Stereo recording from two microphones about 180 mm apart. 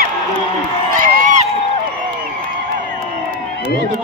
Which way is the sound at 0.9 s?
45° right (ahead or behind).